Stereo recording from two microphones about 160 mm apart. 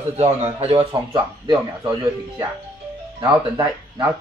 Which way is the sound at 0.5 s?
30° right (ahead or behind).